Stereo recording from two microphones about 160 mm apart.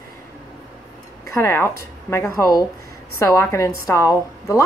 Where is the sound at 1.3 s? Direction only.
15° left (ahead or behind).